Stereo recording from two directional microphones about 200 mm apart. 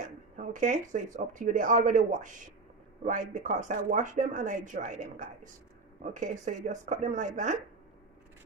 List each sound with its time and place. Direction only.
0.0 s speech: 40° right (ahead or behind)